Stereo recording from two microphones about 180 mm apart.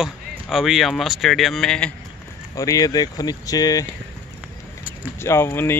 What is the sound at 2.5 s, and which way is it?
Speech, 20° left (ahead or behind).